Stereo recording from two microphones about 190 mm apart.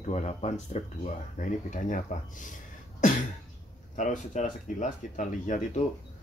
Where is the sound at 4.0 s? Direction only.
40° left (ahead or behind).